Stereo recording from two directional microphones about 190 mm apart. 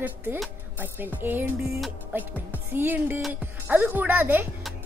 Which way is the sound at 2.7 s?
10° right (ahead or behind).